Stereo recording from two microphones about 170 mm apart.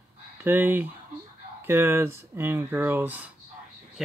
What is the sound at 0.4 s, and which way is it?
Speech, 10° right (ahead or behind).